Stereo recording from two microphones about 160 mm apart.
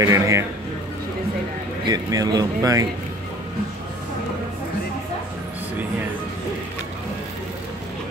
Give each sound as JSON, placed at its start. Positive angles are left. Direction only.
{"t": 0.0, "sound": "speech", "side_deg": -20}
{"t": 1.9, "sound": "speech", "side_deg": -25}